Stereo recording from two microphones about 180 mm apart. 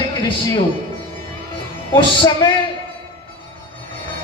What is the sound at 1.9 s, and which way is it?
Speech, 25° left (ahead or behind).